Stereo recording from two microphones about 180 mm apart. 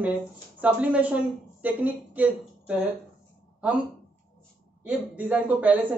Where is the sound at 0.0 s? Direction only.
10° right (ahead or behind).